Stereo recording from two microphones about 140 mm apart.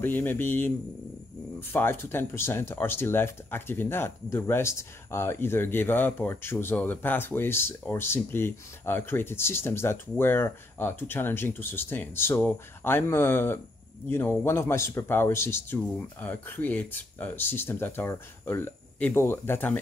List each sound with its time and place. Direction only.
0.0 s speech: 15° left (ahead or behind)